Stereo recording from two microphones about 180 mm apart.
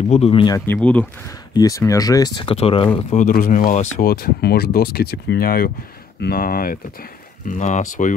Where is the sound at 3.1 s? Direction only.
50° left (ahead or behind).